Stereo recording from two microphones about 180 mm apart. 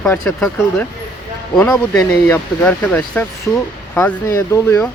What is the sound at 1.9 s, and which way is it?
Speech, 5° left (ahead or behind).